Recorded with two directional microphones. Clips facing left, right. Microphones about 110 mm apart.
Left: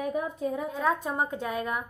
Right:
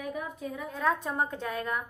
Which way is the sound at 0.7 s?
5° left (ahead or behind).